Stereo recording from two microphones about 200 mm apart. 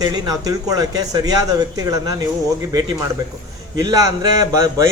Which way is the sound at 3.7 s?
20° right (ahead or behind).